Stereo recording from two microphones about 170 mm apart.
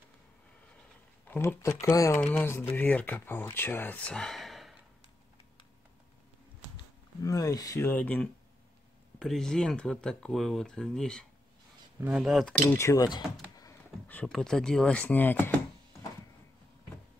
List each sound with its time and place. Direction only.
1.2 s speech: 10° left (ahead or behind)
2.1 s speech: 10° left (ahead or behind)
7.2 s speech: 20° left (ahead or behind); by 11.2 s 5° left (ahead or behind)
12.0 s speech: 5° right (ahead or behind)
12.6 s speech: 15° left (ahead or behind)